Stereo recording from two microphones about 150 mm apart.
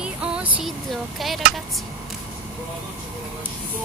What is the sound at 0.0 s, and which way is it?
Music, 5° right (ahead or behind).